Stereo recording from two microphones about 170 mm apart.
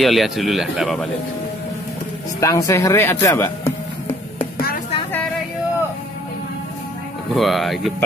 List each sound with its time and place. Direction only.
0.0 s speech: centre (ahead or behind)
2.4 s speech: 20° left (ahead or behind)
7.3 s speech: centre (ahead or behind)